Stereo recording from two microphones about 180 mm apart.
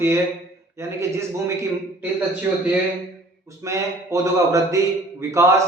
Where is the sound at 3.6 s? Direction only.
15° right (ahead or behind).